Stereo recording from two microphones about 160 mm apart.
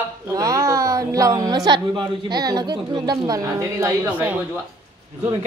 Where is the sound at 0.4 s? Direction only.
20° right (ahead or behind).